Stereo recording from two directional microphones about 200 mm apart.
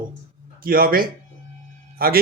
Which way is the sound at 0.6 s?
45° right (ahead or behind).